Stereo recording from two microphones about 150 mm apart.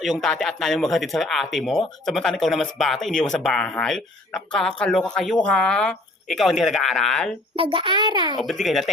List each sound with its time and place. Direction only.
0.0 s speech: centre (ahead or behind)
7.5 s a child's voice: 35° right (ahead or behind)
8.6 s speech: centre (ahead or behind)